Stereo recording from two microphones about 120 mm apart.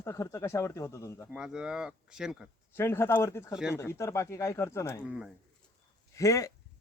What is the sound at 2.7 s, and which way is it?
Speech, 20° left (ahead or behind).